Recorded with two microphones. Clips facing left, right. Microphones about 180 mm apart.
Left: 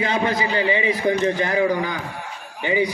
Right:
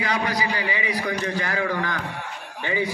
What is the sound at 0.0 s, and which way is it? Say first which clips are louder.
A man's voice: left 4 dB; 25° left (ahead or behind).